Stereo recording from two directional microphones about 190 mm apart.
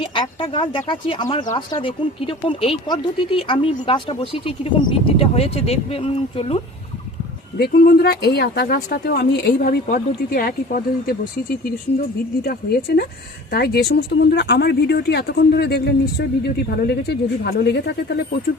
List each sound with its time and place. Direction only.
0.0 s speech: 25° left (ahead or behind)
7.6 s speech: 55° left (ahead or behind)
12.4 s speech: 55° left (ahead or behind)